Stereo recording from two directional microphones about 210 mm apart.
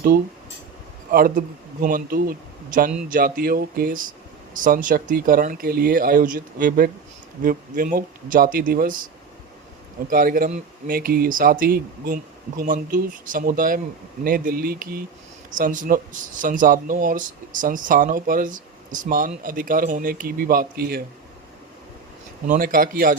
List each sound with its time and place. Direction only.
1.1 s a man's voice: 40° right (ahead or behind)
10.1 s a man's voice: 45° right (ahead or behind)
22.4 s a man's voice: 40° right (ahead or behind)